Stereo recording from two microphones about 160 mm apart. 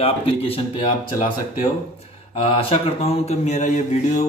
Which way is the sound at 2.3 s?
35° left (ahead or behind).